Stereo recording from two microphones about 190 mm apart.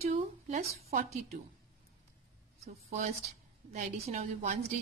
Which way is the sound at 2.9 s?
40° right (ahead or behind).